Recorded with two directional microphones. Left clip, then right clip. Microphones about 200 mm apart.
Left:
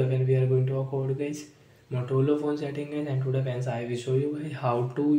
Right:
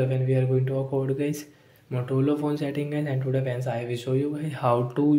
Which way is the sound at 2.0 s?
35° right (ahead or behind).